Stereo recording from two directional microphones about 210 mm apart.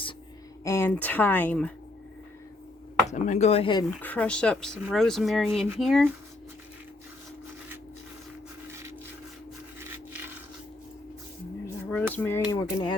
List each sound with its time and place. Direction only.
0.6 s speech: 15° left (ahead or behind)
3.1 s speech: 35° left (ahead or behind)
4.0 s speech: 5° left (ahead or behind)
11.6 s a sound: 10° left (ahead or behind)
12.1 s speech: 10° left (ahead or behind)